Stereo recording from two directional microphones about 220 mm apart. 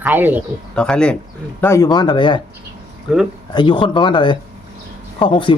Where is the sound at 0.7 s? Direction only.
5° left (ahead or behind); by 2.4 s 20° left (ahead or behind).